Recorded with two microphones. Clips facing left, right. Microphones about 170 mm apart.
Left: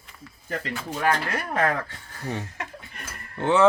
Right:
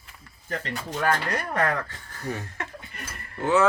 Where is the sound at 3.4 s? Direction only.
30° left (ahead or behind).